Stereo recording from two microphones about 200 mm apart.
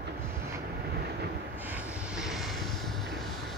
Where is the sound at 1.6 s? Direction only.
10° right (ahead or behind).